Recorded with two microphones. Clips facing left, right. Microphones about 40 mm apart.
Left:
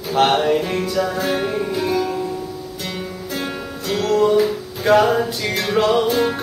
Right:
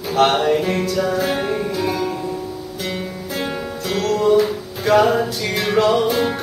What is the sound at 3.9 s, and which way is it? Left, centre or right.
Music, centre.